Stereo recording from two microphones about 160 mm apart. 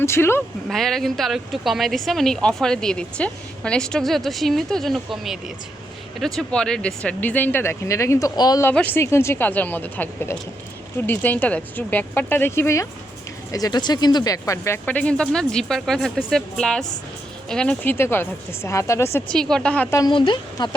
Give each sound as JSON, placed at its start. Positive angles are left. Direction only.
{"t": 0.0, "sound": "speech", "side_deg": 15}
{"t": 0.7, "sound": "speech", "side_deg": 0}
{"t": 8.7, "sound": "speech", "side_deg": 10}
{"t": 19.3, "sound": "speech", "side_deg": 5}
{"t": 20.0, "sound": "speech", "side_deg": 30}